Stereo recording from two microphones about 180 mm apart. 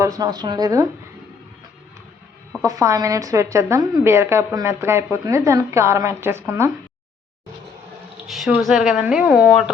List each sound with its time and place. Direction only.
0.0 s speech: 20° right (ahead or behind)
2.6 s a woman's voice: 15° right (ahead or behind)
8.3 s speech: centre (ahead or behind)